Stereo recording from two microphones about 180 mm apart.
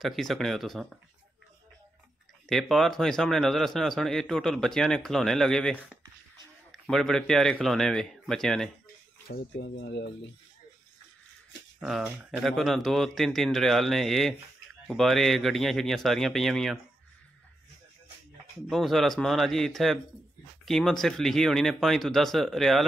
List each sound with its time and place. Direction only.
0.0 s a man's voice: centre (ahead or behind)
2.4 s a man's voice: centre (ahead or behind)
9.3 s speech: 75° left (ahead or behind)
11.8 s a man's voice: centre (ahead or behind)
18.7 s a man's voice: centre (ahead or behind)